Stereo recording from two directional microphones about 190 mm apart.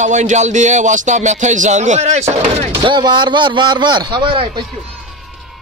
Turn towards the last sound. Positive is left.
turn(degrees=-25)  # may be behind; listen again after turning